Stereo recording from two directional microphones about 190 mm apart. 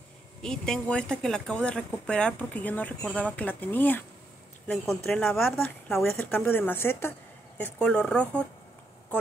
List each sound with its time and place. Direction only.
0.4 s a woman's voice: 5° left (ahead or behind)